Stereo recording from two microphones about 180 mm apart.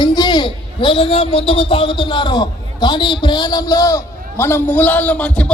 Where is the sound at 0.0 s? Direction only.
25° left (ahead or behind).